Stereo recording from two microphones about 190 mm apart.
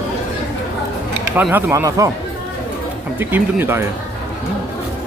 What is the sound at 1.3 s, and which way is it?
Speech, 10° right (ahead or behind).